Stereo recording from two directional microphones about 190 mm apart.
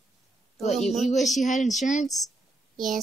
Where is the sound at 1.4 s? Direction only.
40° left (ahead or behind).